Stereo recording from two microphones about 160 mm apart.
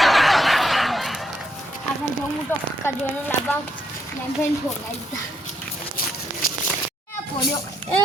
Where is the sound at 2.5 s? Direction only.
15° left (ahead or behind).